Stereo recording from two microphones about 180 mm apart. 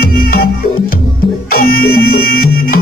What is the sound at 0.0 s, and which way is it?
Music, 55° left (ahead or behind).